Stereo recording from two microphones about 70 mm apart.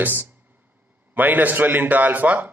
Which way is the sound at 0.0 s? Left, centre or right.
Right.